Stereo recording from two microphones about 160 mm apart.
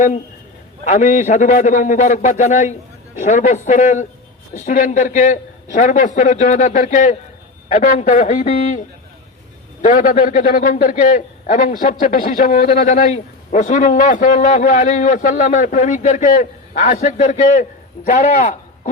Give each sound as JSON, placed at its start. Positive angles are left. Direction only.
{"t": 0.9, "sound": "a man's voice", "side_deg": 50}
{"t": 9.8, "sound": "a man's voice", "side_deg": 55}